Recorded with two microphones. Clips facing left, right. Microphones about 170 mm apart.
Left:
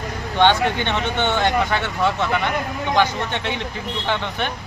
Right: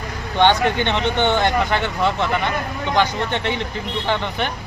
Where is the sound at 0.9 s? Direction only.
20° right (ahead or behind).